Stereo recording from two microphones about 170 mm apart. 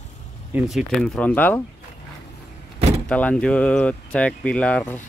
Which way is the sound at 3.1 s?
5° left (ahead or behind).